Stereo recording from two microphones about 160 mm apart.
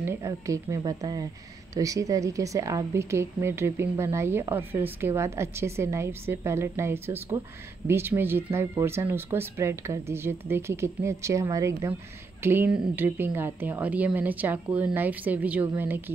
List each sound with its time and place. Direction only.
0.0 s speech: 15° right (ahead or behind)